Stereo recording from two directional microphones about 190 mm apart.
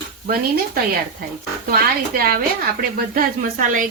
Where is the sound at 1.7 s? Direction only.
50° right (ahead or behind).